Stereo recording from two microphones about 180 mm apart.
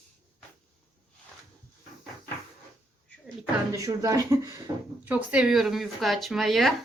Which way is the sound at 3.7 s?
20° right (ahead or behind).